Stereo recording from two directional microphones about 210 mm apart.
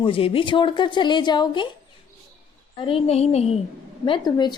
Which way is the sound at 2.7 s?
25° left (ahead or behind).